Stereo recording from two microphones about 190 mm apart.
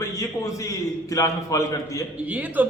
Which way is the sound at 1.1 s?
15° left (ahead or behind).